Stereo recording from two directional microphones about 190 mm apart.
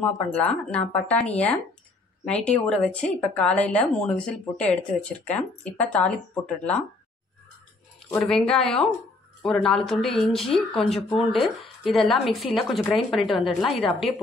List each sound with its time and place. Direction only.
0.3 s a woman's voice: 5° left (ahead or behind)
8.3 s speech: 5° left (ahead or behind)